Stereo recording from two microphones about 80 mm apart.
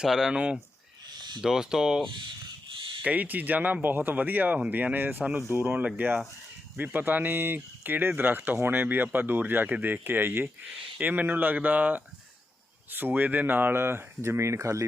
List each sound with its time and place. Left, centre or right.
0.0 s speech: centre
3.0 s speech: centre; by 14.8 s right